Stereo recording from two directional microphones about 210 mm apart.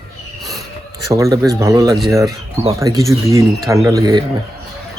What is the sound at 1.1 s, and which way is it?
A man's voice, 15° right (ahead or behind).